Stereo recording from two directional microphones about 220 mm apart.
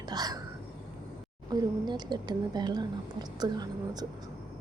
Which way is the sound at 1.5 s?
20° right (ahead or behind).